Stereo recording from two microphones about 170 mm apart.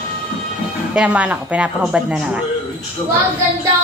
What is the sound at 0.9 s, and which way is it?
A woman's voice, 5° right (ahead or behind).